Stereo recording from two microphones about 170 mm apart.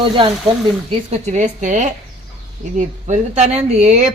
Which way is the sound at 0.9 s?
40° right (ahead or behind).